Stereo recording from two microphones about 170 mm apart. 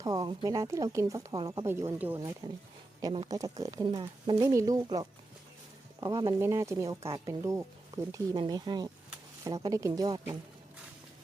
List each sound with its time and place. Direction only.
0.0 s speech: 20° right (ahead or behind)
1.6 s speech: 15° right (ahead or behind)